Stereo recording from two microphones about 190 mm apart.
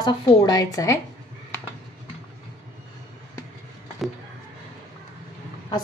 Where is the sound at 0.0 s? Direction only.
20° left (ahead or behind).